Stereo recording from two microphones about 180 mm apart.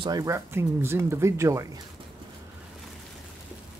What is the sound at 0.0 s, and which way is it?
Speech, 20° right (ahead or behind).